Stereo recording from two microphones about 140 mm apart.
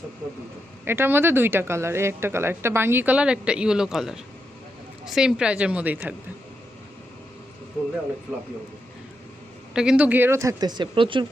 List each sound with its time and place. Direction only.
0.9 s speech: 15° right (ahead or behind)
9.7 s speech: 5° right (ahead or behind); by 11.3 s 35° right (ahead or behind)